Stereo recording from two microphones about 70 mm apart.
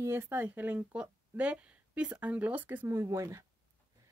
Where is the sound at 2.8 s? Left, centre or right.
Right.